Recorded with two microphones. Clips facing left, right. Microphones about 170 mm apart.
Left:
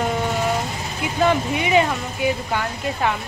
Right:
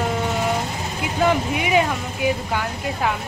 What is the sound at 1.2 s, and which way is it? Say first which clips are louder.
Speech: left 1 dB; 10° right (ahead or behind).